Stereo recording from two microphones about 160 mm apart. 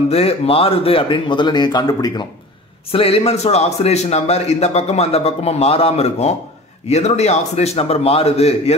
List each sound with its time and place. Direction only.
0.1 s a man's voice: 40° left (ahead or behind)
2.9 s a man's voice: 35° left (ahead or behind)